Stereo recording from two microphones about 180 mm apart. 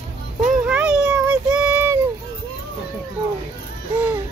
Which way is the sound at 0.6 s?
5° right (ahead or behind).